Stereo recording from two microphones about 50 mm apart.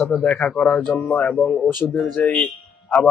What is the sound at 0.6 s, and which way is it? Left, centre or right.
Speech, left.